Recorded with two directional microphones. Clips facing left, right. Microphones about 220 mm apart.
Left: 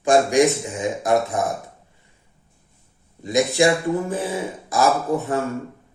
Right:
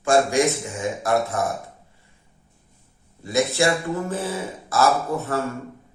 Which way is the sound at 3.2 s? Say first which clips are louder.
Left 3 dB; 15° left (ahead or behind).